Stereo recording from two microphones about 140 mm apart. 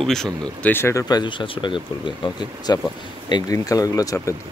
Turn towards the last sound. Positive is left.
turn(degrees=25)  # may be behind; listen again after turning